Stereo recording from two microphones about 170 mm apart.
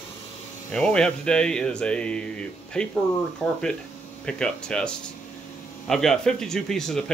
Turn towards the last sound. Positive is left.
turn(degrees=5)  # may be behind; listen again after turning